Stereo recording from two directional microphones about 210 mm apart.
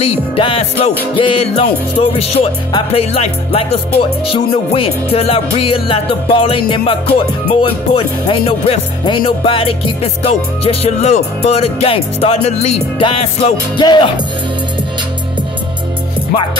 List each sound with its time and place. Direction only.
0.0 s music: 25° left (ahead or behind)